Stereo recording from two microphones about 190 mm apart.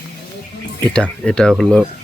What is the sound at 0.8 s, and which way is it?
Speech, 5° left (ahead or behind).